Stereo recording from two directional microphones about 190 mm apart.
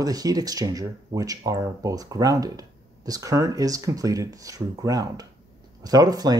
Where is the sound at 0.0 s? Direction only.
20° right (ahead or behind).